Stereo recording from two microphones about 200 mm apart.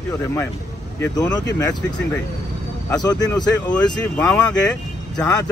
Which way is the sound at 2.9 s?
20° left (ahead or behind).